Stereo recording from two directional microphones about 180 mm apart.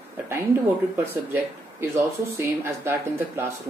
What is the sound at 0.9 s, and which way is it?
Speech, 15° right (ahead or behind).